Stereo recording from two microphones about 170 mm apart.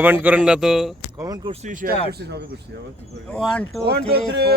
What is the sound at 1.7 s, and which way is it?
Speech, 50° right (ahead or behind).